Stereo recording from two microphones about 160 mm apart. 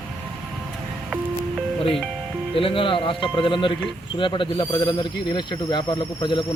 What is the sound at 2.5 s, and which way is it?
Speech, 35° left (ahead or behind).